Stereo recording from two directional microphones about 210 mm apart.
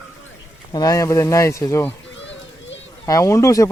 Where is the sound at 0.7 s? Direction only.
15° left (ahead or behind).